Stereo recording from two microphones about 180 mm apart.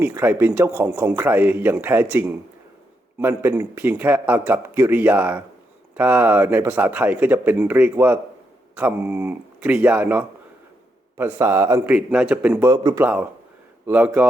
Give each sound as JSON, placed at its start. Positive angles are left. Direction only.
{"t": 0.0, "sound": "a man's voice", "side_deg": -10}
{"t": 11.9, "sound": "a man's voice", "side_deg": -5}
{"t": 12.7, "sound": "a man's voice", "side_deg": -20}
{"t": 13.8, "sound": "a man's voice", "side_deg": -10}